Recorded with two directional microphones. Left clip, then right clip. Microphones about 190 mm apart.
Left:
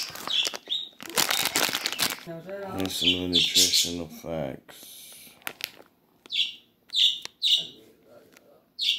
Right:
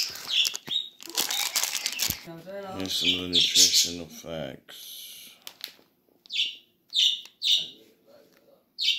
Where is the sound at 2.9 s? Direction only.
5° left (ahead or behind).